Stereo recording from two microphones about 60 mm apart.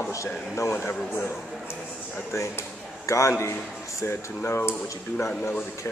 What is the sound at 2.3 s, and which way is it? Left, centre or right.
A man's voice, left.